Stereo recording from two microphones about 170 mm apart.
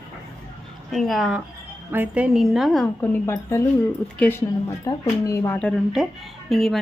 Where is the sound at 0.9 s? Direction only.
Centre (ahead or behind); by 5.5 s 20° left (ahead or behind).